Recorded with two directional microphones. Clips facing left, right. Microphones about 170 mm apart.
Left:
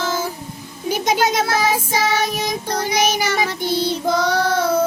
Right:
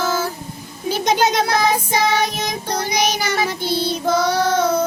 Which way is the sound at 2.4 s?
15° right (ahead or behind).